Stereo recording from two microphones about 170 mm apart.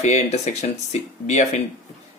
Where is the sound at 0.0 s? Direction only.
40° left (ahead or behind).